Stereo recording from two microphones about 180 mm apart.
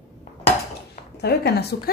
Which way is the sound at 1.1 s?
65° left (ahead or behind).